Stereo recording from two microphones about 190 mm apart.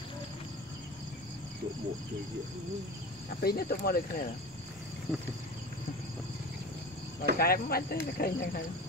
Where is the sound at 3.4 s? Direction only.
55° left (ahead or behind).